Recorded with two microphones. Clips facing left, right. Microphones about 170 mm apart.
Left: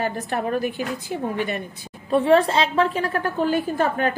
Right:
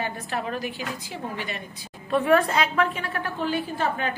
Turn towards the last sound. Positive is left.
turn(degrees=50)  # may be behind; listen again after turning